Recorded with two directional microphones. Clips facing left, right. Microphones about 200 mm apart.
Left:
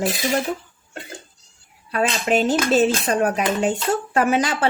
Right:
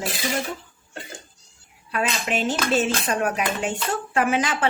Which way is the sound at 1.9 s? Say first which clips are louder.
Left 5 dB; 40° left (ahead or behind).